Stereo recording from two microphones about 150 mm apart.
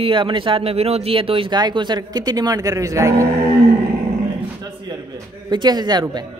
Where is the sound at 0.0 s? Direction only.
35° right (ahead or behind).